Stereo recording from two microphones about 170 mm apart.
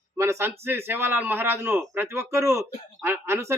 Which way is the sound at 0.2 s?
15° right (ahead or behind).